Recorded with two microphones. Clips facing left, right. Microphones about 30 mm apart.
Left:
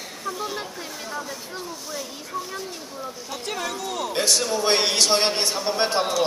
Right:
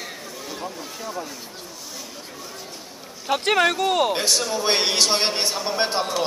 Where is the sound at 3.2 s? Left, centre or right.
Right.